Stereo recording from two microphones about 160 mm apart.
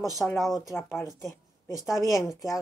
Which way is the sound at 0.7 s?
15° left (ahead or behind).